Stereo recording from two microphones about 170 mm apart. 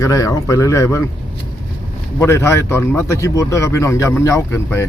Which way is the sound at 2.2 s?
15° left (ahead or behind).